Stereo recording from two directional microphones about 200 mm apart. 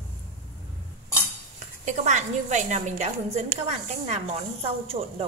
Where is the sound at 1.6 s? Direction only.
40° right (ahead or behind).